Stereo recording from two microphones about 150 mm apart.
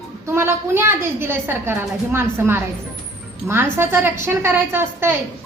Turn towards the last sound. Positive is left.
turn(degrees=-15)  # may be behind; listen again after turning